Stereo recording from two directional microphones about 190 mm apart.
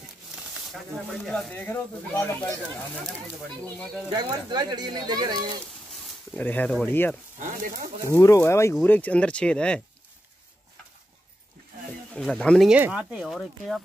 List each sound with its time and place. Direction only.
0.4 s speech: centre (ahead or behind)
4.1 s speech: 20° right (ahead or behind)
6.3 s speech: 10° left (ahead or behind)
12.1 s speech: 5° left (ahead or behind)